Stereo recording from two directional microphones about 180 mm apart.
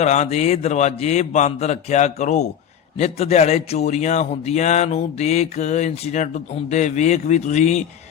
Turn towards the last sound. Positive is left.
turn(degrees=40)  # may be behind; listen again after turning